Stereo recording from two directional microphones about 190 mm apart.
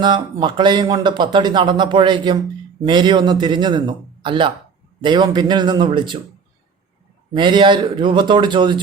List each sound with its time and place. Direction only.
0.0 s a man's voice: 20° right (ahead or behind)
7.3 s a man's voice: 25° right (ahead or behind)